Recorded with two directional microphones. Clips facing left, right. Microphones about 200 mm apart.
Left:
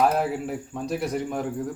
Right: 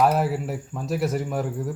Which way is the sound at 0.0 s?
Centre (ahead or behind).